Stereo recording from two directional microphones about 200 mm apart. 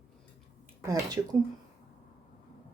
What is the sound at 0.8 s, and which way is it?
Speech, 15° right (ahead or behind).